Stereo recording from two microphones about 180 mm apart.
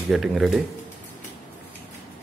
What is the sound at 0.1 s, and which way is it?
Speech, centre (ahead or behind).